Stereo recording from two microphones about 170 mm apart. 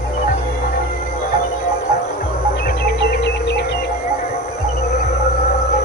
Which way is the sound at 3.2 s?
90° left.